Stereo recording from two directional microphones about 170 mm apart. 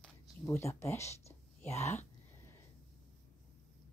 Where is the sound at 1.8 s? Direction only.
15° left (ahead or behind).